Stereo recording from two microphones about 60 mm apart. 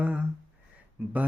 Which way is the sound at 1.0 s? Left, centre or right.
Right.